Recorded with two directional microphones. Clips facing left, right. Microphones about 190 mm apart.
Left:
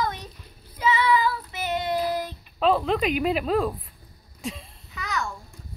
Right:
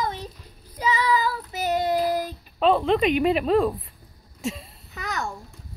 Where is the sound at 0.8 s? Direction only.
40° right (ahead or behind).